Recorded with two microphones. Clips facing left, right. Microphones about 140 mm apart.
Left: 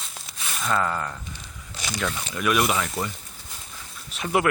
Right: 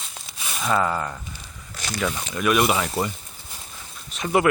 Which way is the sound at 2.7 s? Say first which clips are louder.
Right 3 dB; 30° right (ahead or behind).